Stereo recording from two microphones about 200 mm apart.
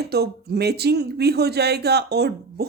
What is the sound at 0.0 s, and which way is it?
A man's voice, 55° right (ahead or behind).